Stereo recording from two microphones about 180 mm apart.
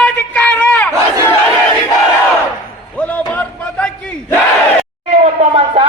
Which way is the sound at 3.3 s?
10° left (ahead or behind).